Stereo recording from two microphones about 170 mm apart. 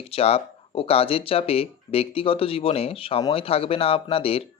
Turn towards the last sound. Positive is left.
turn(degrees=35)  # may be behind; listen again after turning